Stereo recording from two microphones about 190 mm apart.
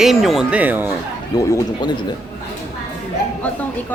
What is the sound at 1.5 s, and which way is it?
Speech, 20° left (ahead or behind).